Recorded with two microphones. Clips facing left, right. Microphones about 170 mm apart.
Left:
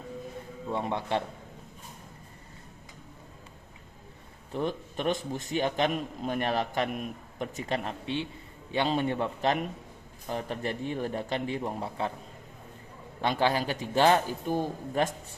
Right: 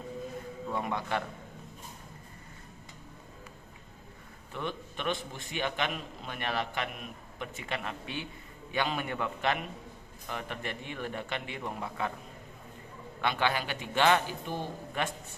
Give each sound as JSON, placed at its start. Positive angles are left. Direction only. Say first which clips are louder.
{"t": 0.7, "sound": "a man's voice", "louder": "left 3 dB", "side_deg": 25}
{"t": 4.5, "sound": "a man's voice", "louder": "left 6 dB", "side_deg": 40}
{"t": 13.2, "sound": "a man's voice", "louder": "left 4 dB", "side_deg": 35}